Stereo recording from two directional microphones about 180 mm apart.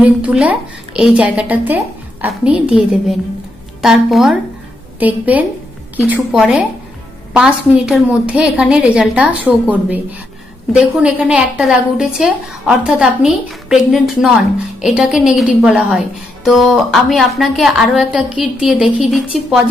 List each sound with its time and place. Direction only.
0.0 s a woman's voice: 5° right (ahead or behind)